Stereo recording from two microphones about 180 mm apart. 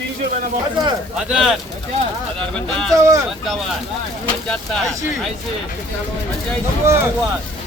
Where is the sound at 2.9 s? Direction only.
20° right (ahead or behind).